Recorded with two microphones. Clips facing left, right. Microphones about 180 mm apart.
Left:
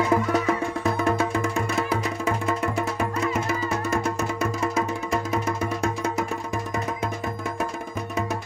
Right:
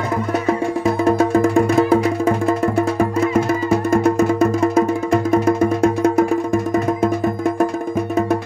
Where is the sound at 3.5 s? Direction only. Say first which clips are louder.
Right 9 dB; 55° right (ahead or behind).